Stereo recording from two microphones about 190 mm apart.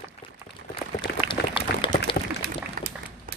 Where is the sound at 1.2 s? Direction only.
25° left (ahead or behind).